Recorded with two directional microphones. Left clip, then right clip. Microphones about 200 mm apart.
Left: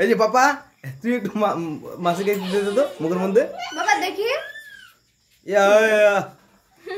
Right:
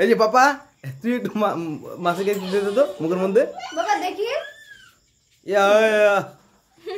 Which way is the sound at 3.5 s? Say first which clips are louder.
Left 2 dB; 45° left (ahead or behind).